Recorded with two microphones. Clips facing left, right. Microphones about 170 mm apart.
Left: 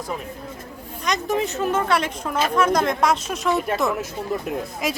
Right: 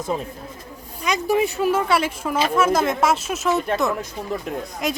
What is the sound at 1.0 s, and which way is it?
Speech, 10° right (ahead or behind).